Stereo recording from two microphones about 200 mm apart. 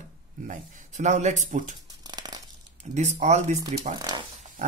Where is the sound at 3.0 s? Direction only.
35° right (ahead or behind).